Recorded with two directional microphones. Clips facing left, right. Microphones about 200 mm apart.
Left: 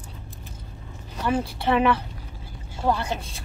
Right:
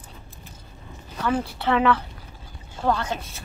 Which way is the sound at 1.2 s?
15° left (ahead or behind).